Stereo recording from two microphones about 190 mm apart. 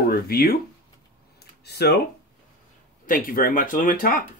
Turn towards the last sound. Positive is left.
turn(degrees=45)  # may be behind; listen again after turning